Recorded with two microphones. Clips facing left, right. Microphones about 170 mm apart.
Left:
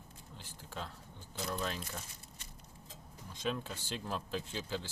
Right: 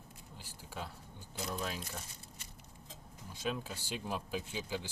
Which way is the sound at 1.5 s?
5° right (ahead or behind).